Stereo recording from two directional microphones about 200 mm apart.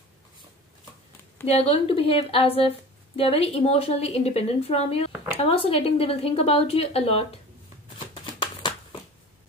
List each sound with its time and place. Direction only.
1.4 s a woman's voice: 30° left (ahead or behind)